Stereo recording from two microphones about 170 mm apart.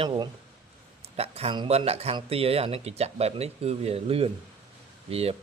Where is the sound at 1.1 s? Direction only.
35° right (ahead or behind).